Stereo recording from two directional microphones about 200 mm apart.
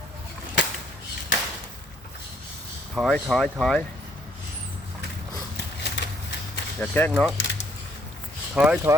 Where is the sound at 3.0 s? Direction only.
Centre (ahead or behind).